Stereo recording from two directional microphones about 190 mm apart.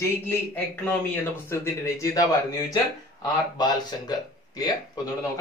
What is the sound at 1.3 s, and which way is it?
A man's voice, 15° left (ahead or behind).